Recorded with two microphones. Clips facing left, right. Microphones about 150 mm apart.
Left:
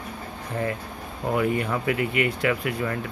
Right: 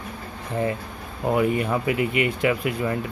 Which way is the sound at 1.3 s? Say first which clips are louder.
Right 2 dB; 20° right (ahead or behind).